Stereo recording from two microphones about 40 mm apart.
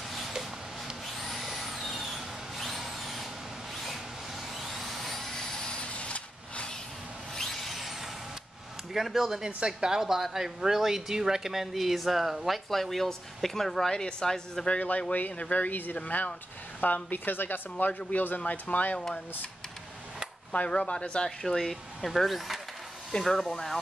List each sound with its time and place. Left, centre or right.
0.3 s a sound: centre
1.0 s vehicle: centre; by 6.7 s left
7.3 s a sound: centre
8.9 s speech: centre
9.6 s speech: right; by 14.7 s centre
14.7 s speech: left
20.5 s speech: left; by 21.7 s centre
22.0 s speech: centre